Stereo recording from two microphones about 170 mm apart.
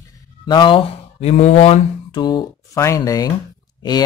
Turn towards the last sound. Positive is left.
turn(degrees=25)  # may be behind; listen again after turning